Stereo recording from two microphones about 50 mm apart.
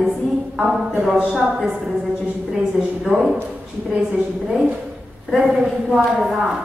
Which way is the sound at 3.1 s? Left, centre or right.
Right.